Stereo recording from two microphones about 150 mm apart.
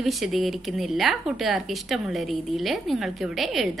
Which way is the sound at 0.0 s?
Centre (ahead or behind).